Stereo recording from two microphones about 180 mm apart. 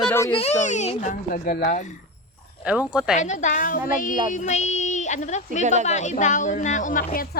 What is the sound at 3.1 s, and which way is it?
A child's voice, 40° left (ahead or behind).